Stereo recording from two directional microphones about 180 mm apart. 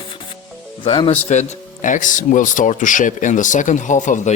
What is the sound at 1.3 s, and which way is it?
Speech, 45° left (ahead or behind).